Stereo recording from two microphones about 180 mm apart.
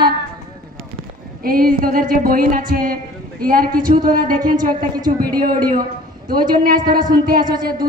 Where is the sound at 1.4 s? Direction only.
55° right (ahead or behind).